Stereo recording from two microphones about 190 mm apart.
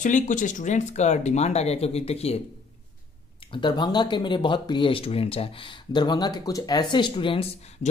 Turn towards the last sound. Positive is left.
turn(degrees=30)  # may be behind; listen again after turning